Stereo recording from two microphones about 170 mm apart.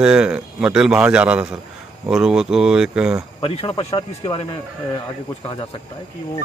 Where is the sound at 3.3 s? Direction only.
30° left (ahead or behind).